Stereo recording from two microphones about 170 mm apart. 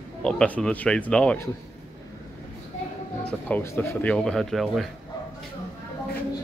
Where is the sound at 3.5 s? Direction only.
10° left (ahead or behind).